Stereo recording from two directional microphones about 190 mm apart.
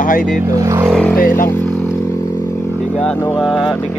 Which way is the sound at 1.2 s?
45° left (ahead or behind).